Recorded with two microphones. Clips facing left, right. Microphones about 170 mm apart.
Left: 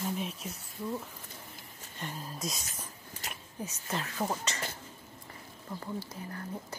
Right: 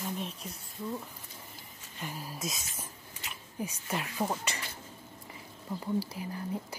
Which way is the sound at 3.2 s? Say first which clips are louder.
Left 2 dB; 40° left (ahead or behind).